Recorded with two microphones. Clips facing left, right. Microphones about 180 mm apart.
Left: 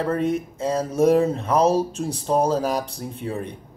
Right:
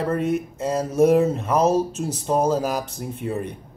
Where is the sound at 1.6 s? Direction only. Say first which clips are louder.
Even; 30° left (ahead or behind).